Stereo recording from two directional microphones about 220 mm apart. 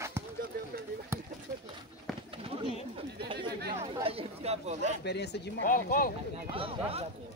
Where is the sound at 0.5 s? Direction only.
45° right (ahead or behind).